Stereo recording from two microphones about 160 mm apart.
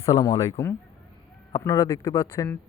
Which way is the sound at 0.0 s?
20° left (ahead or behind).